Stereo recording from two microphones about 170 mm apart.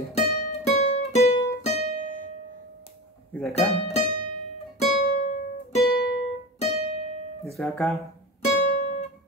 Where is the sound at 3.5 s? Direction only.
35° left (ahead or behind).